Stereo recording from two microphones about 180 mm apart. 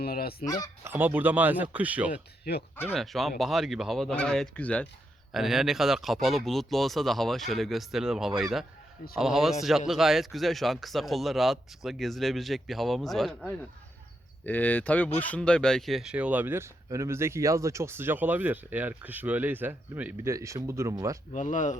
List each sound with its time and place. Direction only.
0.0 s fowl: 60° left (ahead or behind)
0.4 s fowl: 20° left (ahead or behind)
0.9 s speech: 10° right (ahead or behind)
2.4 s speech: 65° left (ahead or behind)
2.9 s speech: centre (ahead or behind); by 21.2 s 15° right (ahead or behind)
21.3 s speech: 45° left (ahead or behind)